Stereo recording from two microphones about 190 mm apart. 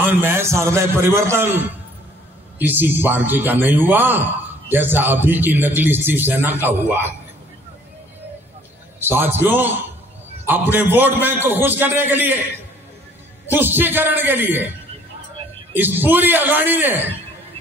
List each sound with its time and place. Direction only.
0.0 s speech: 10° right (ahead or behind)
2.6 s speech: 10° right (ahead or behind)
9.0 s speech: 10° right (ahead or behind)
13.5 s speech: 10° right (ahead or behind)
15.7 s speech: 10° right (ahead or behind)